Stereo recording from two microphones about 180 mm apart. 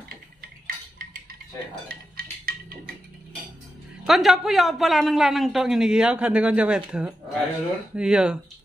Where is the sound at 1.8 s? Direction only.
55° right (ahead or behind).